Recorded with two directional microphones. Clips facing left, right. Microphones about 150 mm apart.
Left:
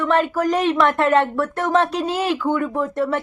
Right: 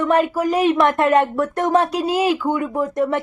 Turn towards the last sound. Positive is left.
turn(degrees=-20)  # may be behind; listen again after turning